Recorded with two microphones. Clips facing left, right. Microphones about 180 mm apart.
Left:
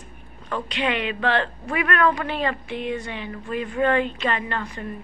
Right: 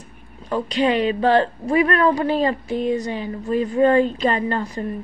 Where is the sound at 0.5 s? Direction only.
35° right (ahead or behind).